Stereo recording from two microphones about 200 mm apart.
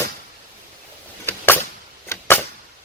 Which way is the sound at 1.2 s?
10° left (ahead or behind).